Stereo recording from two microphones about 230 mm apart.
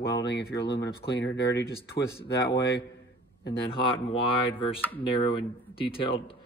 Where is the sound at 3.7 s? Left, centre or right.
Left.